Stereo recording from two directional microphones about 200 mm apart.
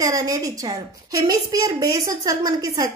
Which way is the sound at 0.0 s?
15° right (ahead or behind).